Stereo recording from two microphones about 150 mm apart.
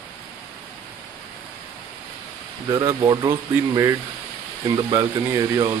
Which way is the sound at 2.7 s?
30° right (ahead or behind).